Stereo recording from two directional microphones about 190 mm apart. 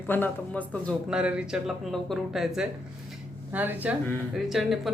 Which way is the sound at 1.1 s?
5° right (ahead or behind).